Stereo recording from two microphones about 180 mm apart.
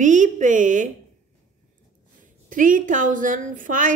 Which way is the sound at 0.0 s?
45° right (ahead or behind).